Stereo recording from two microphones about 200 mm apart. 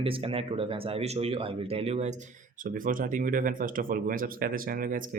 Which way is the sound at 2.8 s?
45° right (ahead or behind).